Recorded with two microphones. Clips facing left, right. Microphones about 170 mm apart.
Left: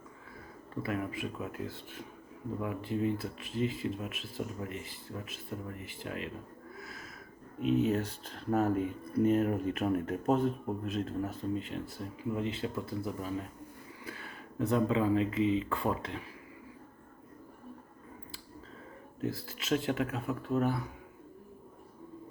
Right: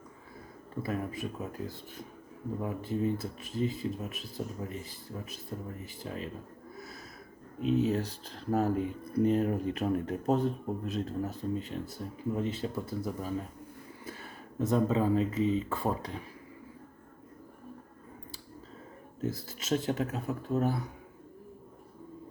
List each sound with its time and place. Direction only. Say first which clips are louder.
0.8 s speech: even; 40° right (ahead or behind)
6.7 s a sound: right 2 dB; 40° right (ahead or behind)
7.6 s speech: even; 35° right (ahead or behind)
19.2 s speech: right 1 dB; 40° right (ahead or behind)